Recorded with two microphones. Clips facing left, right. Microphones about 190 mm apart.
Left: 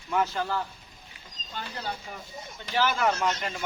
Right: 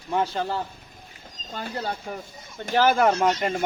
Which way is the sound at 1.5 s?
45° right (ahead or behind).